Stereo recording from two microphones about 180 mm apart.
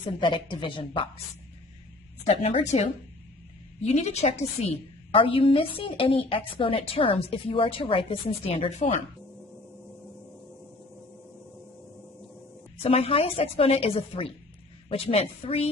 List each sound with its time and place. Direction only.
0.0 s speech: 30° left (ahead or behind)
2.2 s a woman's voice: 35° left (ahead or behind)
3.8 s a woman's voice: 40° left (ahead or behind)
12.8 s a woman's voice: 35° left (ahead or behind)